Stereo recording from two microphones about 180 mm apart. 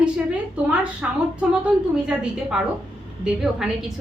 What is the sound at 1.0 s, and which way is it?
A woman's voice, 5° right (ahead or behind).